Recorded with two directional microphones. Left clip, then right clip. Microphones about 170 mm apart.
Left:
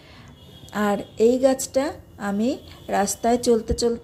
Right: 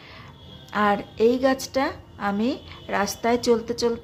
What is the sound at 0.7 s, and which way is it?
A woman's voice, 20° left (ahead or behind).